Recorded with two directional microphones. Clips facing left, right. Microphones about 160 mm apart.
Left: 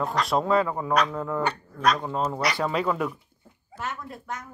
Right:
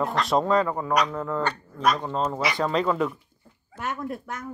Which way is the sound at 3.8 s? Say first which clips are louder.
Right 4 dB; 55° right (ahead or behind).